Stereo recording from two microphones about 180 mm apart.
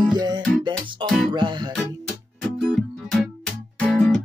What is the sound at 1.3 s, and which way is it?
Music, 25° right (ahead or behind).